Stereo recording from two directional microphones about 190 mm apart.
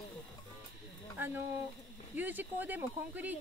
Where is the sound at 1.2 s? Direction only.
10° right (ahead or behind).